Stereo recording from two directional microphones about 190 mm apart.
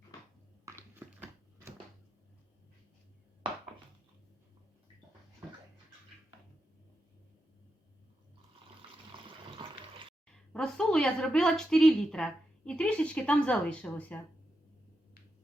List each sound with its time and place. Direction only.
0.6 s a sound: 10° right (ahead or behind)
9.2 s water: 25° right (ahead or behind)
10.5 s a woman's voice: 5° left (ahead or behind)